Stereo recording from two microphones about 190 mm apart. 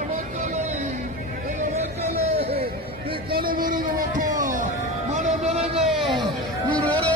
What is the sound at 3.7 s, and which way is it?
Music, 45° right (ahead or behind).